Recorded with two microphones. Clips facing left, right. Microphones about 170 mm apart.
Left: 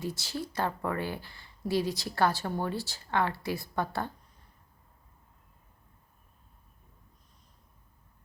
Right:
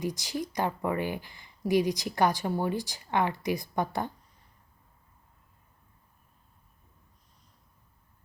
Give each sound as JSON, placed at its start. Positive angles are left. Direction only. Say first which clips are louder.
{"t": 0.0, "sound": "speech", "louder": "right 3 dB", "side_deg": -15}